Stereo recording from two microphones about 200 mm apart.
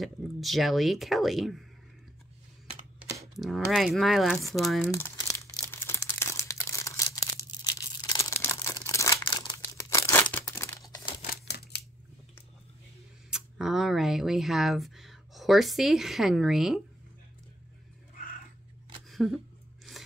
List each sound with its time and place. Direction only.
0.0 s speech: centre (ahead or behind)
3.3 s speech: centre (ahead or behind)
4.9 s crumpling: 15° left (ahead or behind)
11.5 s scissors: 55° left (ahead or behind)
13.3 s speech: centre (ahead or behind)
19.0 s a sound: centre (ahead or behind)